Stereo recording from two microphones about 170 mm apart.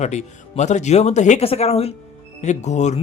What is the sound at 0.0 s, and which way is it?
A man's voice, 40° left (ahead or behind).